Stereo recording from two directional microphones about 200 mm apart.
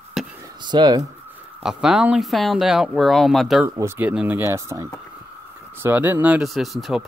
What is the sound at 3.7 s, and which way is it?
Speech, 15° right (ahead or behind).